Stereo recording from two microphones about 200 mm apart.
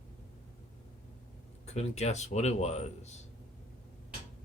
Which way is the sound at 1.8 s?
35° left (ahead or behind).